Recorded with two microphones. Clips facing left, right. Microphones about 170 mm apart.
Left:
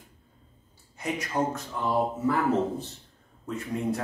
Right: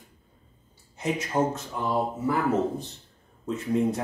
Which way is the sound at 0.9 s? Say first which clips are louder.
Right 3 dB; 20° right (ahead or behind).